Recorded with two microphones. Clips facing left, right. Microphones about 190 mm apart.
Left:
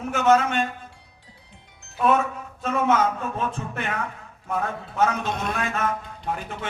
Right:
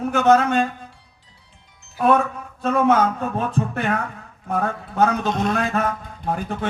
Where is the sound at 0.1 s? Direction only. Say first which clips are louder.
Right 3 dB; 35° right (ahead or behind).